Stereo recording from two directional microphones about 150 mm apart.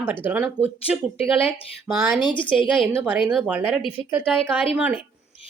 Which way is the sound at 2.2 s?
35° left (ahead or behind).